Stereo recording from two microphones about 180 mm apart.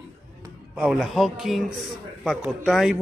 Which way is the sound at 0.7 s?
Centre (ahead or behind).